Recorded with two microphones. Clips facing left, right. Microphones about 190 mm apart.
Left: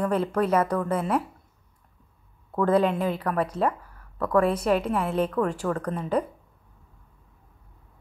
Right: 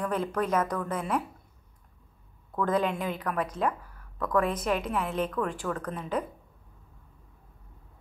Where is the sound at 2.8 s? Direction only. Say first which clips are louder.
Left 5 dB; 35° left (ahead or behind).